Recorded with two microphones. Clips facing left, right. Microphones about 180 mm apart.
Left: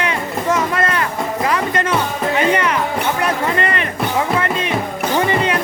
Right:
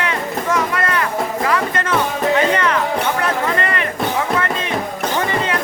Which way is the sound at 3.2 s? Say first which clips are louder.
Left 1 dB; 20° left (ahead or behind).